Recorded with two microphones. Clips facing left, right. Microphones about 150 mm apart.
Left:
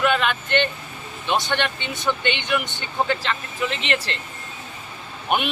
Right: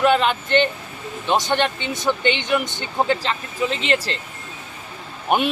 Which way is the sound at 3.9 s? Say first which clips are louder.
Right 4 dB; 35° right (ahead or behind).